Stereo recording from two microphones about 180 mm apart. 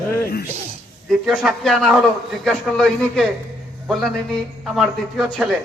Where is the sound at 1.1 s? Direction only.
Centre (ahead or behind).